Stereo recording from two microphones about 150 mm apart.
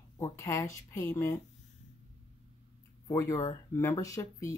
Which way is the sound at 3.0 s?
20° left (ahead or behind).